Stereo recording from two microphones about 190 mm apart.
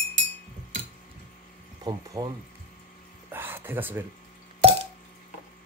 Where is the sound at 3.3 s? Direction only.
10° right (ahead or behind).